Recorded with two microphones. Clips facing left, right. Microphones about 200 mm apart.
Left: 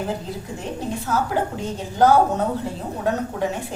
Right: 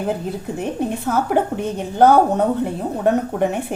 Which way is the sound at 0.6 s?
60° right (ahead or behind).